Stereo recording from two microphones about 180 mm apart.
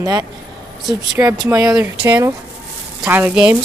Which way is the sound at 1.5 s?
20° right (ahead or behind).